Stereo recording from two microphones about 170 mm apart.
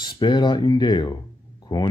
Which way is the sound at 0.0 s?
25° left (ahead or behind).